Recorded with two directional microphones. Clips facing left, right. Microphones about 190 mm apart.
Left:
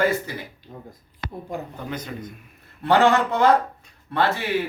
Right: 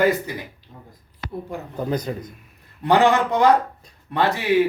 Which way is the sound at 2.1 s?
30° right (ahead or behind).